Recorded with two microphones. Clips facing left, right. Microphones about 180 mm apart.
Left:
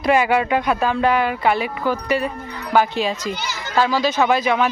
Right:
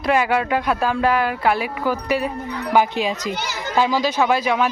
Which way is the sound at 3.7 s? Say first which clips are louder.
Left 1 dB; 15° right (ahead or behind).